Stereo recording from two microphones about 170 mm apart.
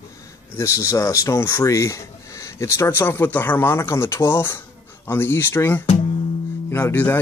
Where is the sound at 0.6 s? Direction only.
15° left (ahead or behind).